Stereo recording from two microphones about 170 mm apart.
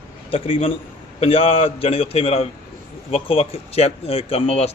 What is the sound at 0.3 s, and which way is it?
Speech, 35° left (ahead or behind).